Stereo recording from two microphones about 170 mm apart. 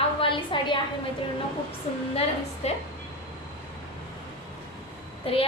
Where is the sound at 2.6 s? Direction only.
40° left (ahead or behind).